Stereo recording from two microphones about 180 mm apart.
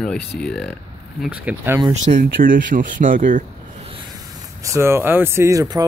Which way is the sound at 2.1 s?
50° right (ahead or behind).